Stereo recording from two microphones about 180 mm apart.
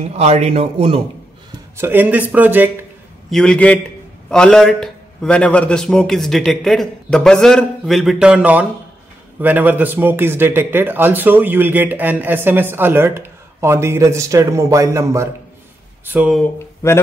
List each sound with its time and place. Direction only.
0.1 s a man's voice: 35° right (ahead or behind)
1.8 s a man's voice: 10° right (ahead or behind)
3.3 s a man's voice: 5° left (ahead or behind); by 15.2 s 15° right (ahead or behind)
16.1 s a man's voice: 5° right (ahead or behind)
16.5 s mantra: 15° left (ahead or behind)